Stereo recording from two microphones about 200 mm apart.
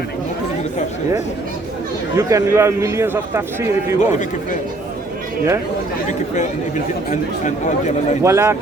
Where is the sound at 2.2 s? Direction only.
15° right (ahead or behind).